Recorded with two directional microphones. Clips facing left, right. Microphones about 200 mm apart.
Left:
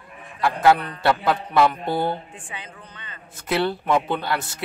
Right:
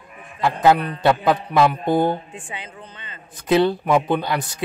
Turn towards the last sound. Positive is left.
turn(degrees=-15)  # may be behind; listen again after turning